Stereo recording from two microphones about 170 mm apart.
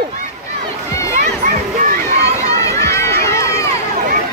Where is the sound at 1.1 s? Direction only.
50° right (ahead or behind).